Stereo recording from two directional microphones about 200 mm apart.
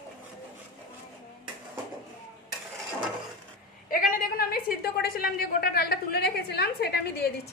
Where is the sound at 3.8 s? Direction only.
45° left (ahead or behind).